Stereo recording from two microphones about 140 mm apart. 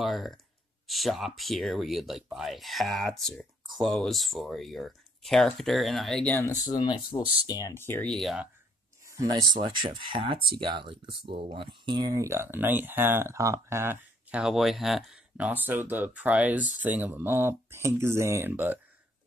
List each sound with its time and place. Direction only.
0.0 s speech: centre (ahead or behind)
6.5 s speech: 25° left (ahead or behind)
7.7 s speech: 15° left (ahead or behind)
8.1 s speech: centre (ahead or behind)
9.0 s speech: 25° right (ahead or behind)
14.4 s speech: centre (ahead or behind)